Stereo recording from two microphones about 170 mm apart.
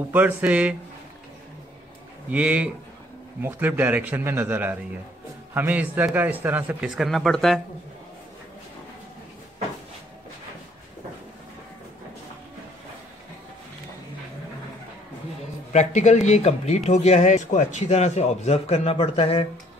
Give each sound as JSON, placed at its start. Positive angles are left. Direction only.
{"t": 0.1, "sound": "a man's voice", "side_deg": -10}
{"t": 2.3, "sound": "a man's voice", "side_deg": -10}
{"t": 15.7, "sound": "speech", "side_deg": 45}